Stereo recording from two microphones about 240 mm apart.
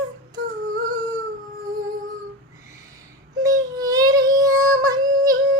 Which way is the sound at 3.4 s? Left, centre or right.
Centre.